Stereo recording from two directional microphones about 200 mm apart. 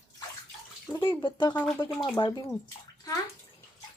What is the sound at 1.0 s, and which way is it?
Speech, 20° left (ahead or behind).